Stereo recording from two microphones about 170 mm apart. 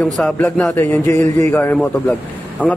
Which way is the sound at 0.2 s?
5° left (ahead or behind).